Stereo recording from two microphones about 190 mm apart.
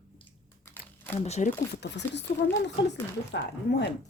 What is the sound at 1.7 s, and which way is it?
Speech, 65° left (ahead or behind).